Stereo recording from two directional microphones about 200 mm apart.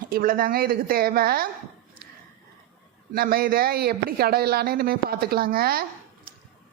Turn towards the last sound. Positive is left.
turn(degrees=-50)  # may be behind; listen again after turning